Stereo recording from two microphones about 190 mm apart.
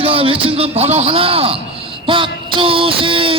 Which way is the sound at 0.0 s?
30° right (ahead or behind).